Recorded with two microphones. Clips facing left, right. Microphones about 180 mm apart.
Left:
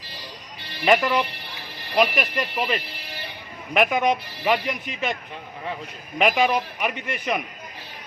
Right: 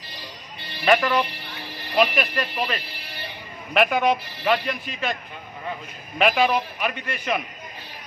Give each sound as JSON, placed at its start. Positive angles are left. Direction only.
{"t": 0.8, "sound": "a man's voice", "side_deg": 15}
{"t": 6.1, "sound": "a man's voice", "side_deg": 15}